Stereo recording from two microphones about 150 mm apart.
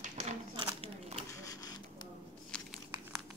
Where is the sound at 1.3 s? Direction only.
25° left (ahead or behind).